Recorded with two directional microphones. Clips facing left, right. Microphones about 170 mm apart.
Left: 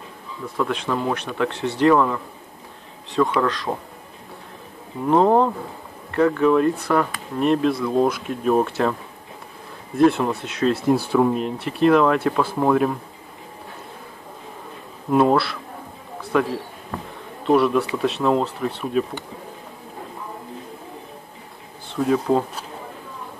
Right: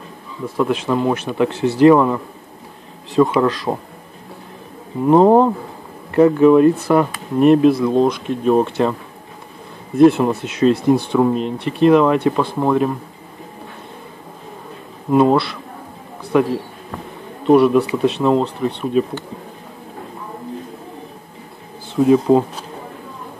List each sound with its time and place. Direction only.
0.6 s speech: 5° right (ahead or behind)
3.4 s speech: 5° right (ahead or behind)
5.0 s speech: 10° right (ahead or behind)
8.0 s speech: 5° left (ahead or behind)
9.9 s speech: centre (ahead or behind)
15.0 s speech: centre (ahead or behind)
16.2 s a sound: centre (ahead or behind)
17.5 s speech: centre (ahead or behind)
21.8 s speech: 10° right (ahead or behind)